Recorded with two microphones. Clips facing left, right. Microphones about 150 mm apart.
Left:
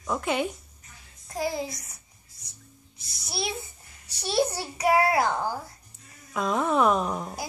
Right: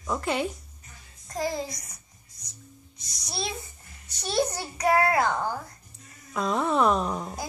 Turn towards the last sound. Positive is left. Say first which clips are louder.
# even
turn(degrees=5)  # may be behind; listen again after turning